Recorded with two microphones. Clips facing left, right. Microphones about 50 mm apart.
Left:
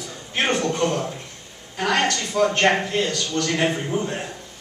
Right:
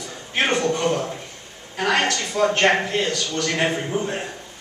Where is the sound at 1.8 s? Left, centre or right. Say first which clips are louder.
Right 1 dB; centre.